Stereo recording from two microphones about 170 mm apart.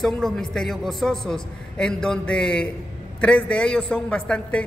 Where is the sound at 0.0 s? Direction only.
Centre (ahead or behind).